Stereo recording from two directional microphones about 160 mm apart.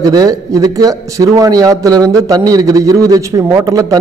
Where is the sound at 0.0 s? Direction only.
20° right (ahead or behind).